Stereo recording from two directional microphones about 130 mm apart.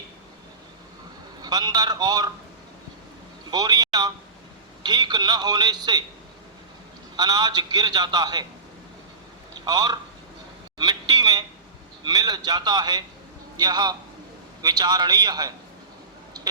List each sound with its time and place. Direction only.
1.4 s a man's voice: 30° right (ahead or behind)
3.5 s a man's voice: 30° right (ahead or behind)
7.2 s a man's voice: 30° right (ahead or behind)
9.6 s a man's voice: 30° right (ahead or behind)
16.4 s a sound: 30° right (ahead or behind)